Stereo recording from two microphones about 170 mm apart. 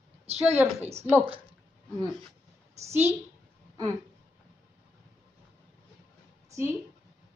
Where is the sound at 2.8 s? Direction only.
15° right (ahead or behind).